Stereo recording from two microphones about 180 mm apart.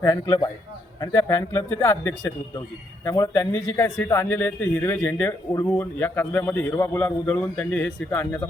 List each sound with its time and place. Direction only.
0.0 s a man's voice: 20° left (ahead or behind)